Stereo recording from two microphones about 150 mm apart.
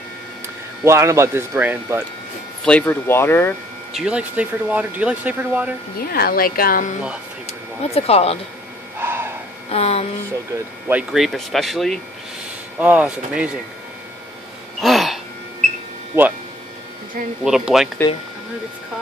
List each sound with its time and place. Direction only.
0.8 s speech: 20° right (ahead or behind)
2.6 s speech: 10° left (ahead or behind)
3.9 s speech: 5° right (ahead or behind)
5.9 s speech: 90° left; by 7.0 s 65° left (ahead or behind)
7.9 s speech: 40° left (ahead or behind)
8.9 s a sound: 15° right (ahead or behind)
9.7 s speech: 45° left (ahead or behind)
10.5 s speech: 10° right (ahead or behind)
14.8 s a sound: centre (ahead or behind)
16.1 s speech: 15° right (ahead or behind)
17.5 s speech: 5° right (ahead or behind)